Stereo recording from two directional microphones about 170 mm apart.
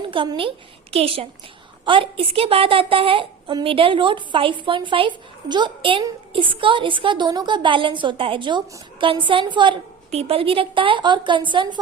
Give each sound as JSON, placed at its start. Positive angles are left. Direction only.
{"t": 0.1, "sound": "a woman's voice", "side_deg": -30}